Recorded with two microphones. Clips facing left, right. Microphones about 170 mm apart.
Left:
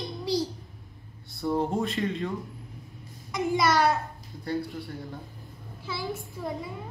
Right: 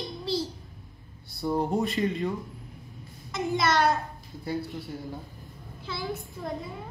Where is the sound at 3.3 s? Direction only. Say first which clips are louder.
Left 2 dB; 10° left (ahead or behind).